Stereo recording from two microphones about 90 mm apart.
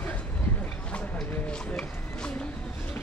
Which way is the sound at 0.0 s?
15° left (ahead or behind).